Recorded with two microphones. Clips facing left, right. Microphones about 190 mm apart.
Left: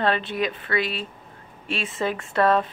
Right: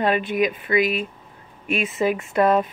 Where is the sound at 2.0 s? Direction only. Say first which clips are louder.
Right 2 dB; 10° right (ahead or behind).